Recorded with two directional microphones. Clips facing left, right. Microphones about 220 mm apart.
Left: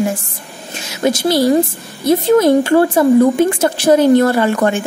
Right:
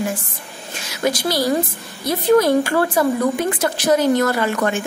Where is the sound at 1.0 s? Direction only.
25° left (ahead or behind).